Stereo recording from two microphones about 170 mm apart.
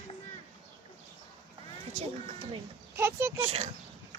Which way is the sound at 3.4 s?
40° right (ahead or behind).